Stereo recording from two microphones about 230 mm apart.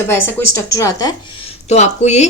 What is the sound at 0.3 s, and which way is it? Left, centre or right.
Speech, centre.